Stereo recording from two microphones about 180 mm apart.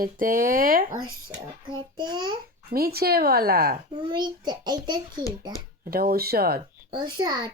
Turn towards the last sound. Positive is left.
turn(degrees=-20)  # may be behind; listen again after turning